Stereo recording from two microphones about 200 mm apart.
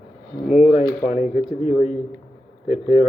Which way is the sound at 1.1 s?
35° left (ahead or behind).